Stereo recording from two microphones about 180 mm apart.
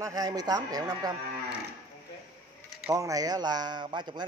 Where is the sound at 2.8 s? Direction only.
20° right (ahead or behind).